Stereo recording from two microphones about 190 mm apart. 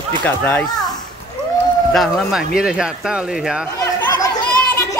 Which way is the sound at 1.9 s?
Centre (ahead or behind).